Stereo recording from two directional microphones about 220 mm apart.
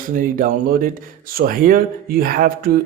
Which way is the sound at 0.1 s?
40° right (ahead or behind).